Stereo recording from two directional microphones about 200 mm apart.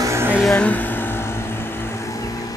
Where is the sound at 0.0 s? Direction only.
10° right (ahead or behind).